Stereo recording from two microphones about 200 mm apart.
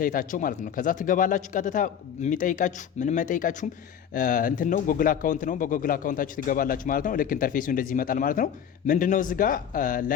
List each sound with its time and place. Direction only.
0.0 s a man's voice: 45° left (ahead or behind)